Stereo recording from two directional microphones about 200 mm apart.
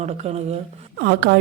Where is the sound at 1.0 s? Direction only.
55° right (ahead or behind).